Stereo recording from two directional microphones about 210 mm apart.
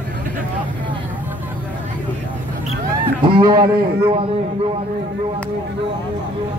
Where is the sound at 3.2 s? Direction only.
25° right (ahead or behind).